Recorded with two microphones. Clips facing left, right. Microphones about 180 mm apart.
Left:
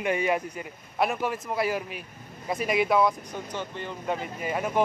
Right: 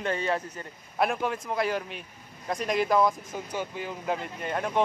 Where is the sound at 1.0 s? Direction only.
Centre (ahead or behind).